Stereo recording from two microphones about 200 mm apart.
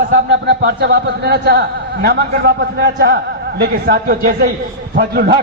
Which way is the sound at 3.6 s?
50° right (ahead or behind).